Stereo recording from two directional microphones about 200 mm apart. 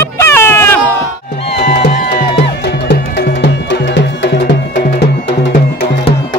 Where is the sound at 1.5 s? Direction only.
50° left (ahead or behind).